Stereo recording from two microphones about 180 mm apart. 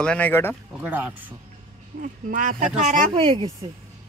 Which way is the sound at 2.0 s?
45° right (ahead or behind).